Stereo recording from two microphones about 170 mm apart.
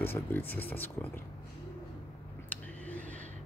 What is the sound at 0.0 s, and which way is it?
Speech, 10° left (ahead or behind).